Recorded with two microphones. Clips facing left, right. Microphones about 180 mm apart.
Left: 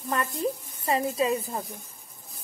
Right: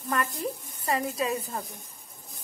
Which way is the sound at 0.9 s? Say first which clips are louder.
Left 3 dB; 25° left (ahead or behind).